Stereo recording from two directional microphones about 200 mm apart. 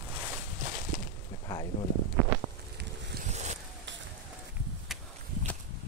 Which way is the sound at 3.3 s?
35° right (ahead or behind).